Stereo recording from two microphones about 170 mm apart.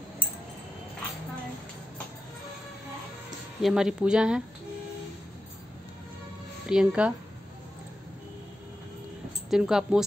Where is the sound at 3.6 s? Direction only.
5° right (ahead or behind).